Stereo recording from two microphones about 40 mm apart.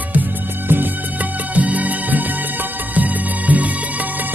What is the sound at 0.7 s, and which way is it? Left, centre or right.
Music, right.